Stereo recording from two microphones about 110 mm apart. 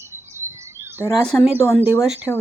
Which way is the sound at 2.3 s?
20° left (ahead or behind).